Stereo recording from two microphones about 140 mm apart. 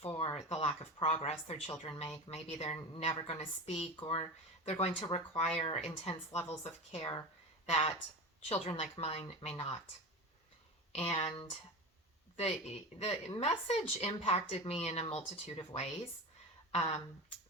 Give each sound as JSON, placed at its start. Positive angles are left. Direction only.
{"t": 0.0, "sound": "a sound", "side_deg": 40}
{"t": 1.1, "sound": "speech", "side_deg": 50}
{"t": 10.9, "sound": "speech", "side_deg": 50}
{"t": 12.4, "sound": "speech", "side_deg": 50}